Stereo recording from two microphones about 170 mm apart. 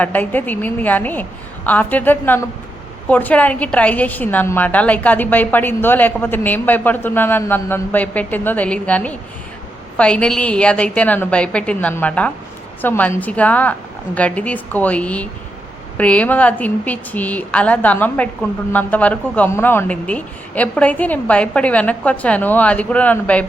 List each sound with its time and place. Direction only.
0.0 s a woman's voice: 10° left (ahead or behind)